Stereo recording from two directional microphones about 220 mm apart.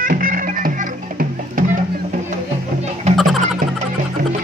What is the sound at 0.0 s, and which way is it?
Music, 40° right (ahead or behind).